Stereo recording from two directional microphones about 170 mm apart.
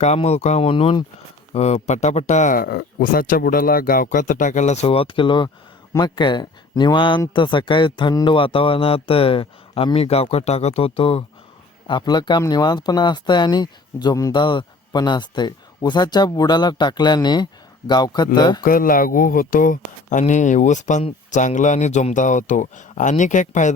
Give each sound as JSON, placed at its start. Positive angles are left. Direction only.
{"t": 0.0, "sound": "speech", "side_deg": 40}
{"t": 18.6, "sound": "speech", "side_deg": 55}